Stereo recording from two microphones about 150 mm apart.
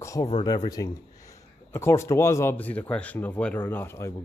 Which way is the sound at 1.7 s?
20° left (ahead or behind).